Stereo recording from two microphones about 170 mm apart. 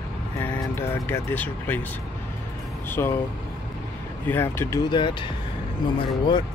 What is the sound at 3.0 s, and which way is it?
Speech, 20° left (ahead or behind).